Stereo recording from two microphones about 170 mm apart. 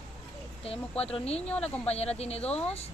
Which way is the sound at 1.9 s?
40° left (ahead or behind).